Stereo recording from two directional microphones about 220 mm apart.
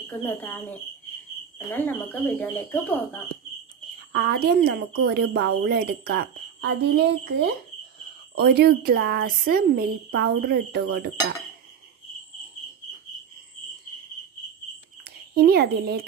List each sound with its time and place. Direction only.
0.0 s speech: 10° left (ahead or behind)
1.8 s speech: 5° left (ahead or behind)
4.1 s speech: 45° right (ahead or behind)
15.0 s speech: 45° right (ahead or behind)